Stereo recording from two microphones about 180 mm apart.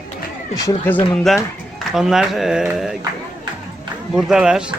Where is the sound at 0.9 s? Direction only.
5° left (ahead or behind).